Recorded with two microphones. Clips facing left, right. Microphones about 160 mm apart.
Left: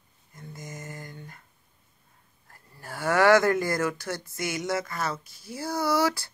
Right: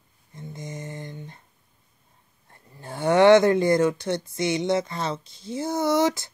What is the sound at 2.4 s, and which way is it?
Speech, 25° right (ahead or behind).